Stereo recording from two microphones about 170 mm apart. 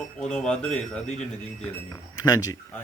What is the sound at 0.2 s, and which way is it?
Speech, 5° left (ahead or behind).